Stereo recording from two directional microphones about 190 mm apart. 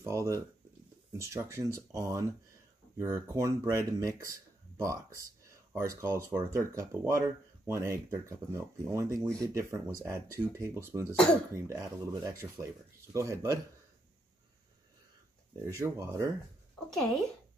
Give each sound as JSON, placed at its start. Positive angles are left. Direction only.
{"t": 0.0, "sound": "speech", "side_deg": -15}
{"t": 15.7, "sound": "speech", "side_deg": -15}